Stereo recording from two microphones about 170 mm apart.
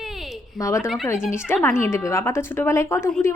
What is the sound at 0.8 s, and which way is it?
Speech, centre (ahead or behind).